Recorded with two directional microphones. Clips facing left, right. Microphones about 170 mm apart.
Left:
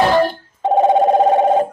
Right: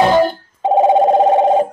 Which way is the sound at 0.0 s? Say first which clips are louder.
Right 2 dB; 20° right (ahead or behind).